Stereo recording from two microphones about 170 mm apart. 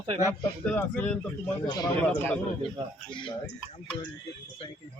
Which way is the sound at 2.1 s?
10° left (ahead or behind).